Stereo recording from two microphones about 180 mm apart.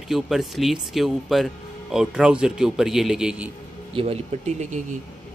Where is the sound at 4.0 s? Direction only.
35° right (ahead or behind).